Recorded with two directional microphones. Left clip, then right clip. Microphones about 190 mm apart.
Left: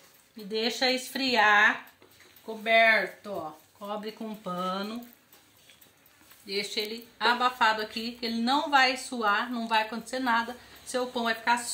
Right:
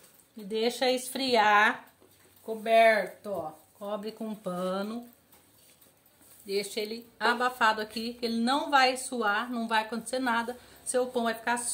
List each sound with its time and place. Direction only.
0.5 s speech: 30° right (ahead or behind)
2.6 s speech: 55° right (ahead or behind)
6.4 s speech: 50° right (ahead or behind)